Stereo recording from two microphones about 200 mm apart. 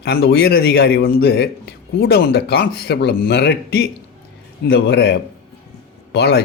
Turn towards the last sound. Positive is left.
turn(degrees=55)  # may be behind; listen again after turning